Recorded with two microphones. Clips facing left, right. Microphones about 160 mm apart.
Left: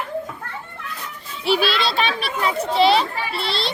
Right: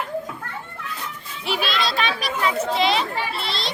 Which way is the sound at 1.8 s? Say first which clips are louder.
Left 2 dB; 30° left (ahead or behind).